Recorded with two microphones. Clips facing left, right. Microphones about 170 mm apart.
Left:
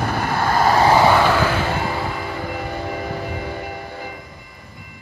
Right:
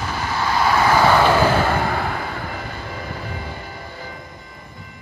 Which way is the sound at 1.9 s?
60° right (ahead or behind).